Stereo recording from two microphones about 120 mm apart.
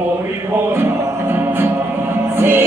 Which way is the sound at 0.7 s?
20° right (ahead or behind).